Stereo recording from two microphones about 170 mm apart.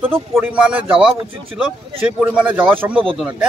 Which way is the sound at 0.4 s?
10° right (ahead or behind).